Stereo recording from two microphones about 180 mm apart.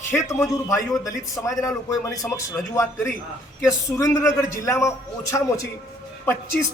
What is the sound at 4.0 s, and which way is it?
A man's voice, 15° left (ahead or behind).